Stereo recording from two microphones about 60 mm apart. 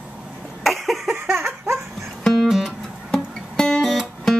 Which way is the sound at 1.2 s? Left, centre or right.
Right.